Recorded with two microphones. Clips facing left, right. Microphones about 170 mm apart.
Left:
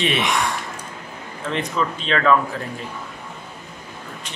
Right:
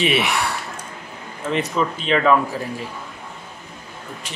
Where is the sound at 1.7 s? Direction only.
15° right (ahead or behind).